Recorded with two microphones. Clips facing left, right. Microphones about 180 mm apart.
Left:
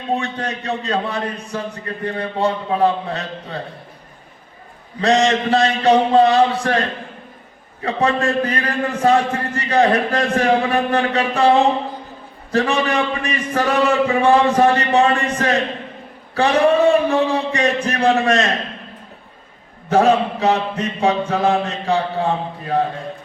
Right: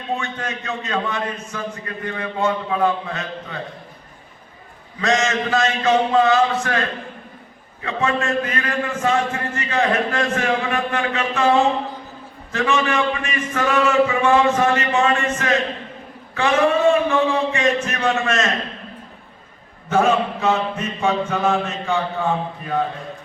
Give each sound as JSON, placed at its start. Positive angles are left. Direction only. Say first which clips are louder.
{"t": 0.2, "sound": "a man's voice", "louder": "left 3 dB", "side_deg": 35}
{"t": 4.9, "sound": "a man's voice", "louder": "left 4 dB", "side_deg": 35}
{"t": 19.9, "sound": "a man's voice", "louder": "left 3 dB", "side_deg": 35}